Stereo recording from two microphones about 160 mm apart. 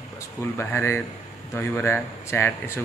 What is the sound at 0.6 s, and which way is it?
Speech, 15° left (ahead or behind).